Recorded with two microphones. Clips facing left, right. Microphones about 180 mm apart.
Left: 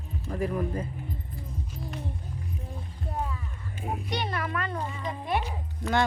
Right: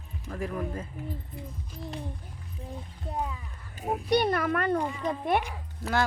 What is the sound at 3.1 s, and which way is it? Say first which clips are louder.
Speech: right 1 dB; 15° right (ahead or behind).